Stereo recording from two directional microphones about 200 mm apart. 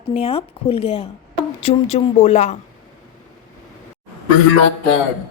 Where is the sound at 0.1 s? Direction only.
30° left (ahead or behind).